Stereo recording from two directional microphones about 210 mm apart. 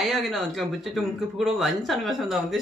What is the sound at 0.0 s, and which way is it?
Speech, centre (ahead or behind).